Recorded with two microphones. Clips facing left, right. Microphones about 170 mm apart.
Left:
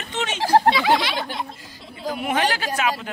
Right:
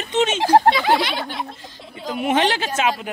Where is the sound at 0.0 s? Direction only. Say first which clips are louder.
Right 6 dB; 20° right (ahead or behind).